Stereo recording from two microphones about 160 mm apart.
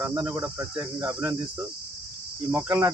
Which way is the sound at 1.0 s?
25° right (ahead or behind).